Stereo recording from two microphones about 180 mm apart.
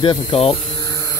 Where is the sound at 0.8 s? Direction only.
15° left (ahead or behind).